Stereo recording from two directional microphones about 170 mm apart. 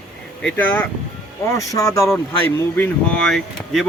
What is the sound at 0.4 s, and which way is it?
Speech, 10° left (ahead or behind).